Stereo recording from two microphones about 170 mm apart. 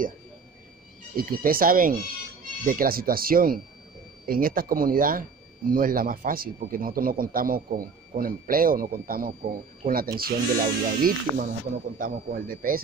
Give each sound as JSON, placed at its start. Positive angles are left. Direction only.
{"t": 1.1, "sound": "a man's voice", "side_deg": -55}